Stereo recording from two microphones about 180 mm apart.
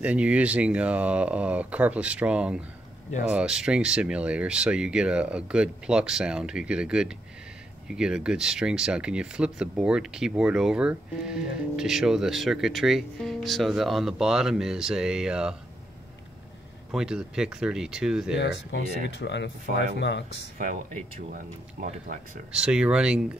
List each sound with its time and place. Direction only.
0.0 s speech: 5° right (ahead or behind)
16.9 s speech: 5° right (ahead or behind)
19.1 s speech: 75° left (ahead or behind)
21.8 s speech: 50° right (ahead or behind)
22.5 s speech: 5° right (ahead or behind)